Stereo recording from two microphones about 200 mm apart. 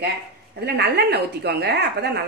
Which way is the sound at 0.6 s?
55° right (ahead or behind).